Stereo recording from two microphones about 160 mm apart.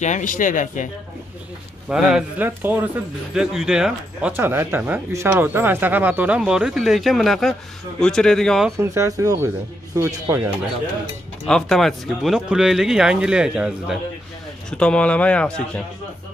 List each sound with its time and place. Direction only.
0.0 s speech: 50° left (ahead or behind)
1.9 s speech: 5° right (ahead or behind)
8.7 s speech: 20° right (ahead or behind)
11.4 s speech: 5° left (ahead or behind)
14.7 s speech: 5° left (ahead or behind)